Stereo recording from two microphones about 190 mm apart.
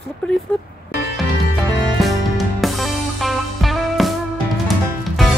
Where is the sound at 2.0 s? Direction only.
Centre (ahead or behind).